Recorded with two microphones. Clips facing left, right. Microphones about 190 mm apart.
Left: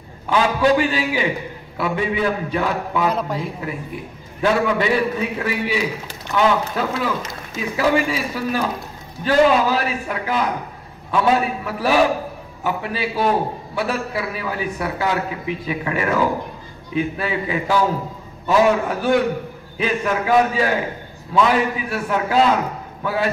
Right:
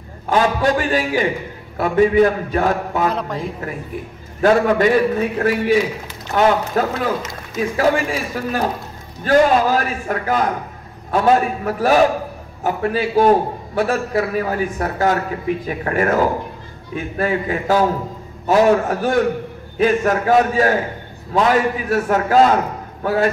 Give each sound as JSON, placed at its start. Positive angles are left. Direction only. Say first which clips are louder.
{"t": 0.3, "sound": "a man's voice", "louder": "even", "side_deg": -45}
{"t": 3.1, "sound": "a man's voice", "louder": "even", "side_deg": 5}
{"t": 3.6, "sound": "a man's voice", "louder": "right 1 dB", "side_deg": -45}